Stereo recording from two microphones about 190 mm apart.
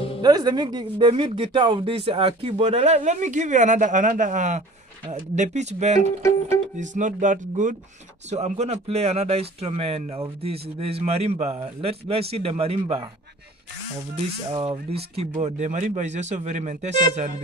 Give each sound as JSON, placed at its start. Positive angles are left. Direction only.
{"t": 0.2, "sound": "speech", "side_deg": -20}
{"t": 14.5, "sound": "speech", "side_deg": -25}